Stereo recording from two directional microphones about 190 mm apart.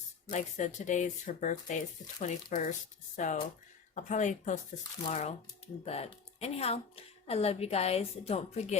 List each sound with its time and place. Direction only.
0.3 s a woman's voice: 40° left (ahead or behind)